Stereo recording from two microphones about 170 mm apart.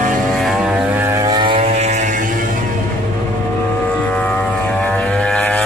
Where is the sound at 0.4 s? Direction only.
10° right (ahead or behind); by 2.2 s 45° right (ahead or behind).